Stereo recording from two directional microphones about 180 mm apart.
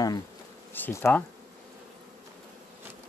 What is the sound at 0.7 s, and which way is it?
Speech, 10° left (ahead or behind).